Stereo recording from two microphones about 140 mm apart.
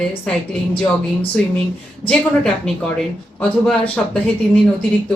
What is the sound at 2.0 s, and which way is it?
Speech, 5° left (ahead or behind).